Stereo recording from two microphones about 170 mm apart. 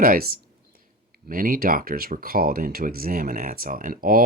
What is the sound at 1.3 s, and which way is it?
Speech, 55° right (ahead or behind).